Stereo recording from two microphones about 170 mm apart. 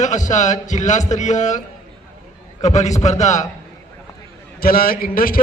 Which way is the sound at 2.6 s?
40° left (ahead or behind).